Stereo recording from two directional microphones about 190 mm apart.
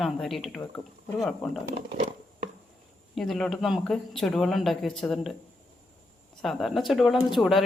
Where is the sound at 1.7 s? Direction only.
35° right (ahead or behind).